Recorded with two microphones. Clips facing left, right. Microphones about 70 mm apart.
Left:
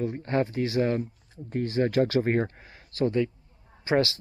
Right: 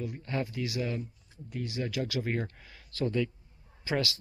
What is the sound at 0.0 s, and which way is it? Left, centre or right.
Speech, left.